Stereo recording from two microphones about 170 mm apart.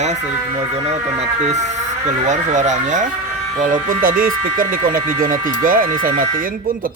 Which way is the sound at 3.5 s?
50° right (ahead or behind).